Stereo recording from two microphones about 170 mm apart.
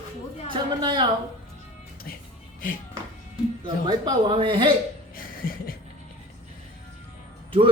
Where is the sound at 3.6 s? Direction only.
25° right (ahead or behind).